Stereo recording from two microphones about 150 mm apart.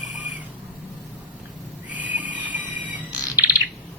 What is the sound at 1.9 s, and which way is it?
Neigh, 10° right (ahead or behind).